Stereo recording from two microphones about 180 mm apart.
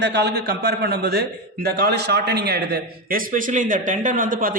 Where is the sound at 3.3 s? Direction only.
45° right (ahead or behind).